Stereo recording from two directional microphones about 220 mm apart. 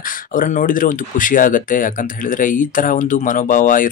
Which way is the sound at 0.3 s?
35° left (ahead or behind).